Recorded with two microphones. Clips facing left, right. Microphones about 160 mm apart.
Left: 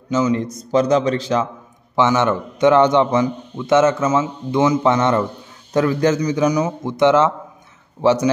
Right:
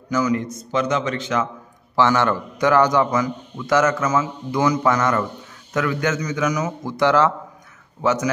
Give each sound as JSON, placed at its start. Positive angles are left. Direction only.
{"t": 0.1, "sound": "a man's voice", "side_deg": 25}
{"t": 2.0, "sound": "a man's voice", "side_deg": 20}